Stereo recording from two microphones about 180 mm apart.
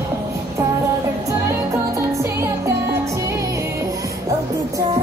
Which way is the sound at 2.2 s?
15° right (ahead or behind).